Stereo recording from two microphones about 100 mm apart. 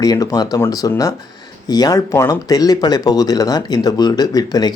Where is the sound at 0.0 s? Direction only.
40° left (ahead or behind).